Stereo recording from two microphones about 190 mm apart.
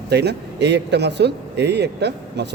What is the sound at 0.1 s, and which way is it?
Speech, 60° right (ahead or behind).